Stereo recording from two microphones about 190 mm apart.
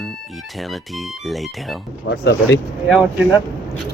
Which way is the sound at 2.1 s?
65° left (ahead or behind).